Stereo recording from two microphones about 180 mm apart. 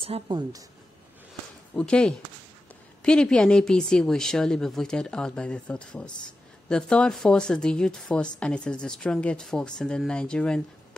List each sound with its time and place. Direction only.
0.0 s a woman's voice: 30° right (ahead or behind)
1.8 s speech: 5° left (ahead or behind)